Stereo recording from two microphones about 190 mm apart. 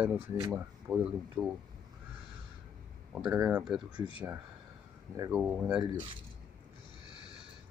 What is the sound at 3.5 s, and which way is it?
Speech, 5° right (ahead or behind).